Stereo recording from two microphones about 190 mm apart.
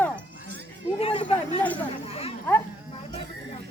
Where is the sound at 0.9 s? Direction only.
30° left (ahead or behind).